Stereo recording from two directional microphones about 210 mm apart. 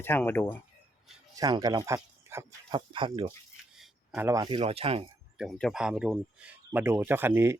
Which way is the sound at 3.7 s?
5° right (ahead or behind).